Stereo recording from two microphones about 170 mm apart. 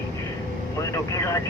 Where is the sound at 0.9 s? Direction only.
20° left (ahead or behind).